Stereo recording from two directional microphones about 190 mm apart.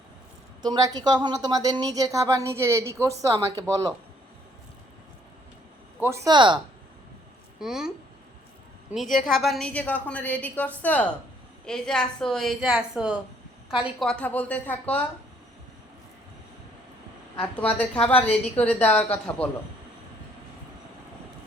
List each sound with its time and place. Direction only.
0.6 s a woman's voice: 20° right (ahead or behind)
6.0 s a woman's voice: 15° right (ahead or behind)
7.6 s a woman's voice: 5° right (ahead or behind)
17.4 s a woman's voice: 10° left (ahead or behind)